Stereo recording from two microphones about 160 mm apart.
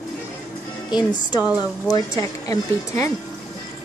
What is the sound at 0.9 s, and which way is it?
Speech, 10° right (ahead or behind).